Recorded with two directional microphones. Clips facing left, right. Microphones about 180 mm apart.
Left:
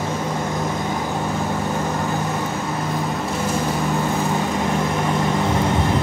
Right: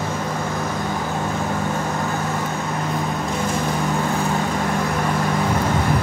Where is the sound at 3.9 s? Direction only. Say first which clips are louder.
Even; 10° left (ahead or behind).